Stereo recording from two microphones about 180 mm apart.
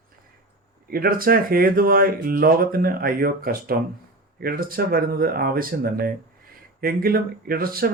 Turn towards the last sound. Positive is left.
turn(degrees=-55)  # may be behind; listen again after turning